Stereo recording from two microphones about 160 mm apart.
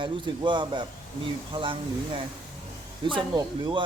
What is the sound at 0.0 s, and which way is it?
Speech, 30° right (ahead or behind).